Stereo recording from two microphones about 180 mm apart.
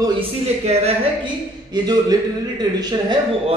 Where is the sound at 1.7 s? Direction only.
20° right (ahead or behind).